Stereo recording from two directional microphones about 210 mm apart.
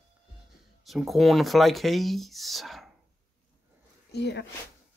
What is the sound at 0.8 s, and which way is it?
Speech, centre (ahead or behind).